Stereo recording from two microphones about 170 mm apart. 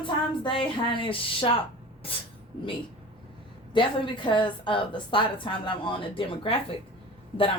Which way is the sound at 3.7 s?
30° left (ahead or behind).